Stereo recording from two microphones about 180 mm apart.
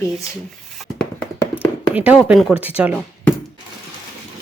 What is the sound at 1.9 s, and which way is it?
Speech, 10° right (ahead or behind).